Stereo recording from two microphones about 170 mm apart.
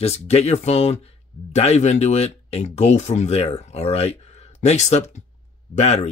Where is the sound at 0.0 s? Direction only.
40° left (ahead or behind).